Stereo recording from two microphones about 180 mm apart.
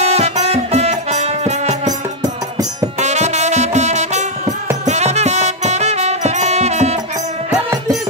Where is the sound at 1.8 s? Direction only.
20° right (ahead or behind).